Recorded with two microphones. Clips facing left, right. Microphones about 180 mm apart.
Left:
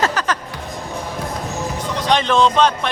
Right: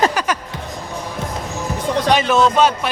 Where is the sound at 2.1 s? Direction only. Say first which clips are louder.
Even; 5° right (ahead or behind).